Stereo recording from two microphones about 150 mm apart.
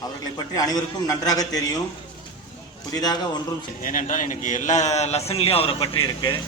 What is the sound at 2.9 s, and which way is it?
Speech, 25° left (ahead or behind).